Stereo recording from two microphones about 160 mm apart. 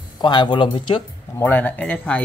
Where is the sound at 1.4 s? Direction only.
10° left (ahead or behind).